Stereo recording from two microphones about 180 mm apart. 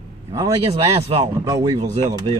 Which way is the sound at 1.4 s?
20° right (ahead or behind).